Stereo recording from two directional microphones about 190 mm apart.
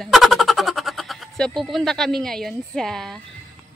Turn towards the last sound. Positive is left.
turn(degrees=5)  # may be behind; listen again after turning